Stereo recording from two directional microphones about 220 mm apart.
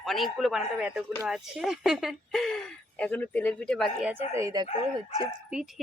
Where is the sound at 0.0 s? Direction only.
Centre (ahead or behind); by 4.7 s 15° right (ahead or behind).